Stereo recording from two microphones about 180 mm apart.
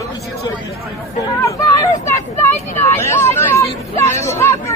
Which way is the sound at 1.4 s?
15° left (ahead or behind).